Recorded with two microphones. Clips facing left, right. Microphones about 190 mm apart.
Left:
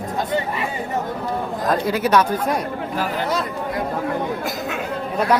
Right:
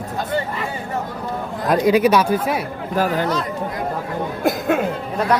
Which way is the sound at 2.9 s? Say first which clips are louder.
Right 6 dB; 45° right (ahead or behind).